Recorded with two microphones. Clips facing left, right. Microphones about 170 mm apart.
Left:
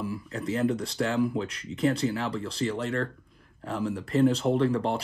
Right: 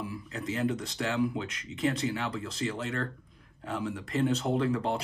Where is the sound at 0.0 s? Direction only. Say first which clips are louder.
Left 4 dB; 35° left (ahead or behind).